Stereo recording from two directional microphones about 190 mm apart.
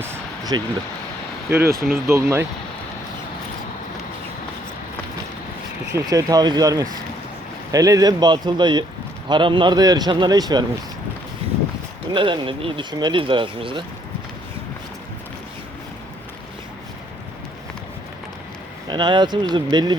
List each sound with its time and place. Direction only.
0.1 s a sound: 20° right (ahead or behind)
1.5 s speech: 10° right (ahead or behind)
5.9 s speech: 20° right (ahead or behind)
12.1 s speech: 25° right (ahead or behind)
18.9 s speech: 25° right (ahead or behind)